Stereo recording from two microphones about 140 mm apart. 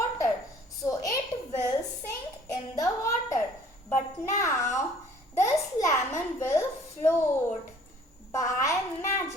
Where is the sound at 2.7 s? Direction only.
20° left (ahead or behind).